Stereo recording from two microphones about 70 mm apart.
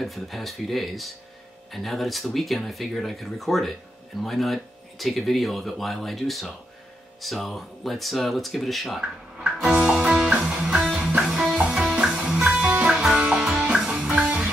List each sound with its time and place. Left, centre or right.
0.0 s speech: centre
9.4 s music: centre
9.9 s music: centre